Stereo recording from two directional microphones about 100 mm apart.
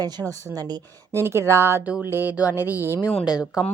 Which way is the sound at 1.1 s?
25° right (ahead or behind).